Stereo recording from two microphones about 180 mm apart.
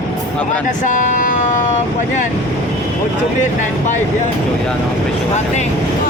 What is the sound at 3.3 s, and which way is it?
Speech, 40° left (ahead or behind).